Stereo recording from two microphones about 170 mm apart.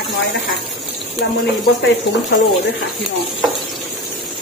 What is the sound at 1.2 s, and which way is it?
Speech, 85° left.